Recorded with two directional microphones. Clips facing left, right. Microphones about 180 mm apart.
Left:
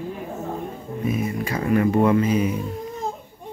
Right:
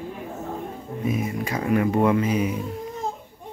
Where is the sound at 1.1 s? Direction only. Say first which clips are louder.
Left 1 dB; 15° right (ahead or behind).